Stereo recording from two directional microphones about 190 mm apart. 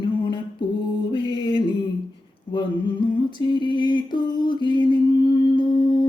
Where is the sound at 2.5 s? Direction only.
25° left (ahead or behind).